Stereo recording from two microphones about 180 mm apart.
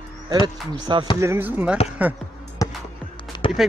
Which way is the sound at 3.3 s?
25° left (ahead or behind).